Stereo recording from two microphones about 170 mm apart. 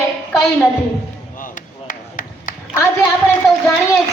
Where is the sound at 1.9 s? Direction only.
50° left (ahead or behind).